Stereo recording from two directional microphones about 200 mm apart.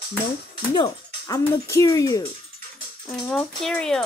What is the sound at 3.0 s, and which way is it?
A woman's voice, 5° left (ahead or behind).